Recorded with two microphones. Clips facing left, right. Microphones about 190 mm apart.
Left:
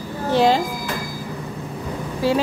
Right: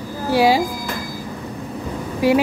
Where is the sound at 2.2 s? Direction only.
15° right (ahead or behind).